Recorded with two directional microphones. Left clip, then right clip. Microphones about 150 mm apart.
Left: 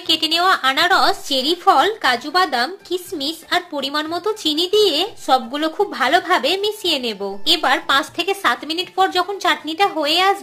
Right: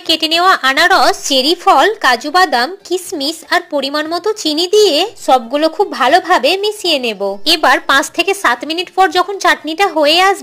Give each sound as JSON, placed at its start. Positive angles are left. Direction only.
{"t": 0.1, "sound": "a woman's voice", "side_deg": -40}
{"t": 7.4, "sound": "a woman's voice", "side_deg": -55}